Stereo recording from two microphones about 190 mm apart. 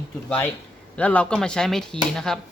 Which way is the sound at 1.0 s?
5° left (ahead or behind).